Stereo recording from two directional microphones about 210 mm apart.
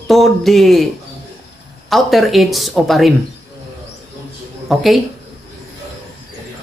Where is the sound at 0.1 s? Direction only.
Centre (ahead or behind).